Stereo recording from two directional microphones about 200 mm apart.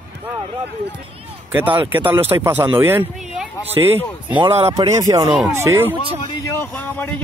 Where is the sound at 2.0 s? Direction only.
10° right (ahead or behind).